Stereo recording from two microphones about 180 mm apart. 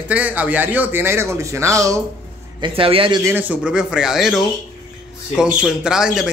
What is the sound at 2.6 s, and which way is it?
Speech, 30° right (ahead or behind).